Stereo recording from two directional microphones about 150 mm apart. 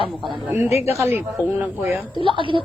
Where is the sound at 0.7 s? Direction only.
45° left (ahead or behind).